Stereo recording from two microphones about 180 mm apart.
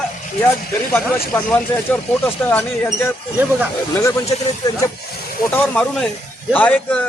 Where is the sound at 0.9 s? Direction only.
10° left (ahead or behind).